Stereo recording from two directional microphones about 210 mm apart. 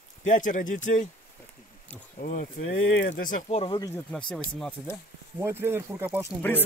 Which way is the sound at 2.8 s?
65° left (ahead or behind).